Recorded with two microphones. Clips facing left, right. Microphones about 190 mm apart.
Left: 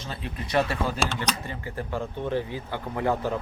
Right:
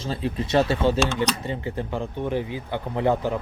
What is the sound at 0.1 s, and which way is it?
Speech, 30° right (ahead or behind).